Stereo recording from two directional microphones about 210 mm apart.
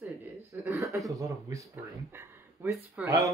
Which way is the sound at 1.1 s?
15° right (ahead or behind).